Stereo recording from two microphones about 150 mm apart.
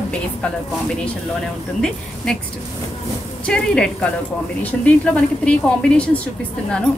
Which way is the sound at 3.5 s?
5° left (ahead or behind).